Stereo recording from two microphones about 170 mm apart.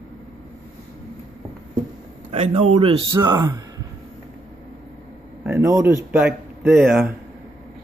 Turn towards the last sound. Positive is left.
turn(degrees=-5)  # may be behind; listen again after turning